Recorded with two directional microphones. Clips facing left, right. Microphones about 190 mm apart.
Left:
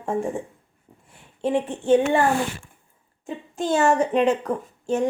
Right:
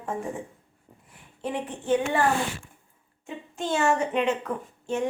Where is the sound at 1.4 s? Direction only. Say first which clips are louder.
Left 8 dB; 25° left (ahead or behind).